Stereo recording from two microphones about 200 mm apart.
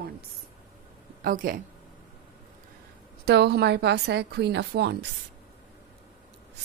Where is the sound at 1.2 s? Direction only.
45° right (ahead or behind).